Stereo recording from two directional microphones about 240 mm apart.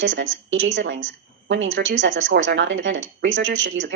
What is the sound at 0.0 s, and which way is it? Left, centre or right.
A woman's voice, right.